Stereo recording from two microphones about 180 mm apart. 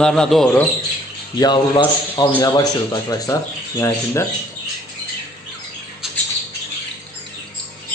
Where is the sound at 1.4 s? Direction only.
25° left (ahead or behind).